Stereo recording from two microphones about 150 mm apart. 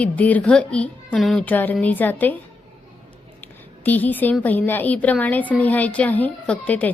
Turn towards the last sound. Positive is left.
turn(degrees=10)  # may be behind; listen again after turning